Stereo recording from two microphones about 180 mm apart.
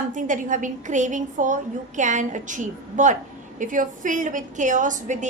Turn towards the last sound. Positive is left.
turn(degrees=-45)  # may be behind; listen again after turning